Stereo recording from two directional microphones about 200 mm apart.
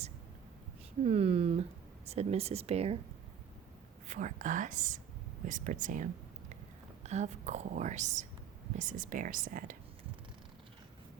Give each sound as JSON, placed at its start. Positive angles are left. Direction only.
{"t": 1.0, "sound": "a sound", "side_deg": -30}
{"t": 2.0, "sound": "a woman's voice", "side_deg": -30}
{"t": 4.1, "sound": "a woman's voice", "side_deg": -40}